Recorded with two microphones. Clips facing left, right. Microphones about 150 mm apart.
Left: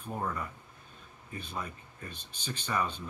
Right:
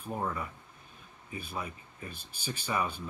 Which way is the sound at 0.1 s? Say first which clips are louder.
Right 1 dB; 10° right (ahead or behind).